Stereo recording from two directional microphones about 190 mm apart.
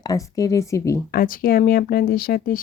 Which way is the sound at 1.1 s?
50° left (ahead or behind).